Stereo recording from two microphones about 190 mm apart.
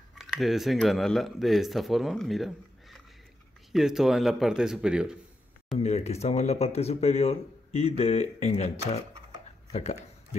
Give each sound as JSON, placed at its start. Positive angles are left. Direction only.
{"t": 0.1, "sound": "speech", "side_deg": 0}
{"t": 5.8, "sound": "speech", "side_deg": 35}